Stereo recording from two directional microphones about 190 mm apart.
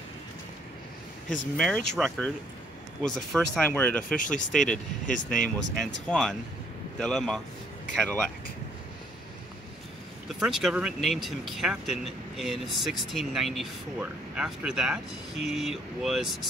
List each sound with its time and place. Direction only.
1.6 s speech: 5° left (ahead or behind)
4.2 s speech: 45° left (ahead or behind)
5.9 s speech: centre (ahead or behind)
10.2 s speech: centre (ahead or behind)